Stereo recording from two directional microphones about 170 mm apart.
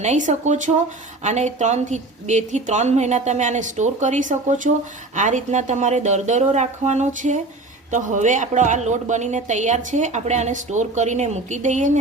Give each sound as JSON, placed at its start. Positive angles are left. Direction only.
{"t": 0.0, "sound": "a woman's voice", "side_deg": -45}